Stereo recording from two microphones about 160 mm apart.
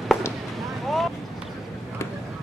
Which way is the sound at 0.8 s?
Centre (ahead or behind).